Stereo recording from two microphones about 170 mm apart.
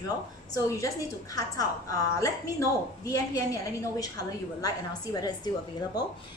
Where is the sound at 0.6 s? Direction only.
20° left (ahead or behind).